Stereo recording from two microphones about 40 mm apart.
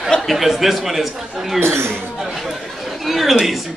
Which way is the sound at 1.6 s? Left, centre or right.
Right.